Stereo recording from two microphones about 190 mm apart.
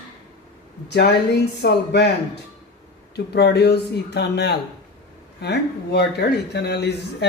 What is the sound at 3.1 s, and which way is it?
Speech, 60° left (ahead or behind).